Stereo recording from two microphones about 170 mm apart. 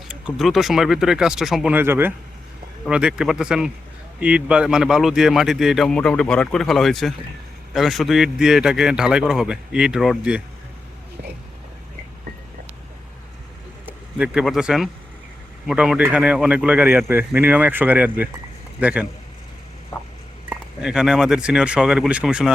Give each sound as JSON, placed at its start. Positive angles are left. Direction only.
{"t": 0.1, "sound": "a man's voice", "side_deg": 0}
{"t": 13.8, "sound": "a man's voice", "side_deg": -5}
{"t": 19.9, "sound": "a sound", "side_deg": 15}
{"t": 20.5, "sound": "a man's voice", "side_deg": -5}